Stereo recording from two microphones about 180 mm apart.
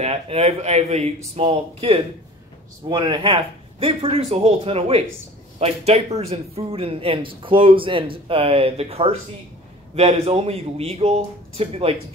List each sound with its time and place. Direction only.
0.0 s speech: 35° right (ahead or behind)